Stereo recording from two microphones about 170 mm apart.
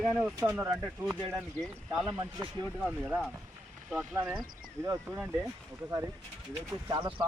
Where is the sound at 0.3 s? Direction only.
15° right (ahead or behind).